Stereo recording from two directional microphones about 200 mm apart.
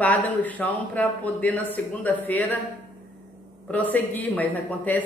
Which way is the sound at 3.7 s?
10° left (ahead or behind).